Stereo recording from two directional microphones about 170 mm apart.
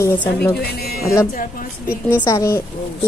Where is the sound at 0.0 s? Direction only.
10° left (ahead or behind).